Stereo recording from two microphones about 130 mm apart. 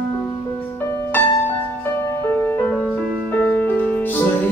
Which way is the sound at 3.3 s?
10° left (ahead or behind).